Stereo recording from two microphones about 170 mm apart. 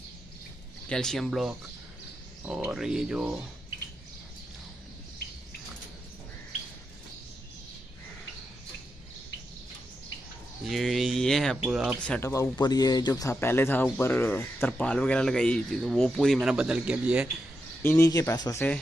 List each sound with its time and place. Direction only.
0.8 s speech: 5° left (ahead or behind)
2.7 s speech: 5° right (ahead or behind)
10.6 s speech: centre (ahead or behind)
17.8 s speech: 15° left (ahead or behind)